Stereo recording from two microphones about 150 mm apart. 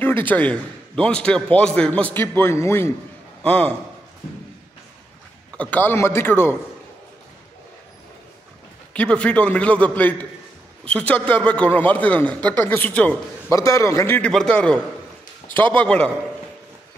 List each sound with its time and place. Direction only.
0.0 s a man's voice: 10° left (ahead or behind)
5.6 s a man's voice: 10° left (ahead or behind)
8.9 s a man's voice: 5° left (ahead or behind)
13.5 s a man's voice: 20° left (ahead or behind)